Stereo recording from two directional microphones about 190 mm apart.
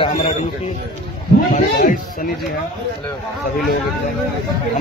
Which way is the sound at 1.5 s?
45° left (ahead or behind).